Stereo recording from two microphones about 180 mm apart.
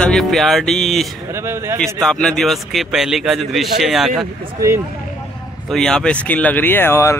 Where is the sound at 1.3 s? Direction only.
15° right (ahead or behind).